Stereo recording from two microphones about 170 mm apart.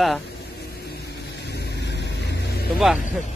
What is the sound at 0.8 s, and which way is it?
Vehicle, 75° left (ahead or behind).